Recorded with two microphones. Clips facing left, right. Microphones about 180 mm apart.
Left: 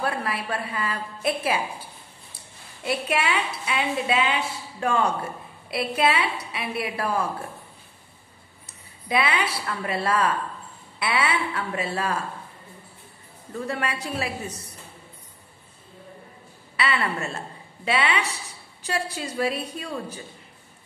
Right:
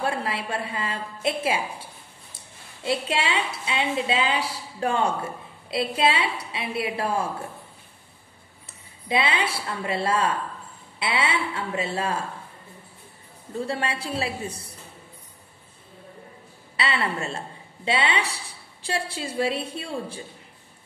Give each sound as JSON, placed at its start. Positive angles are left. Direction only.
{"t": 0.0, "sound": "a woman's voice", "side_deg": -25}
{"t": 9.1, "sound": "a woman's voice", "side_deg": -25}
{"t": 13.7, "sound": "a woman's voice", "side_deg": -30}
{"t": 16.7, "sound": "a woman's voice", "side_deg": -30}